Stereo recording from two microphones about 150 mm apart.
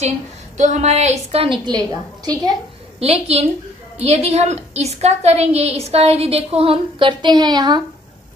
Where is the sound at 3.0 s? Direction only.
45° right (ahead or behind).